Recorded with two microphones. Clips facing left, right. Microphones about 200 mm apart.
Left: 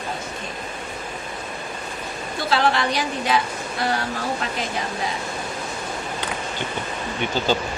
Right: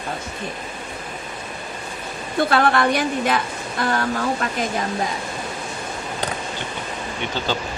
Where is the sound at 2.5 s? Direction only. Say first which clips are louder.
Right 2 dB; 55° right (ahead or behind).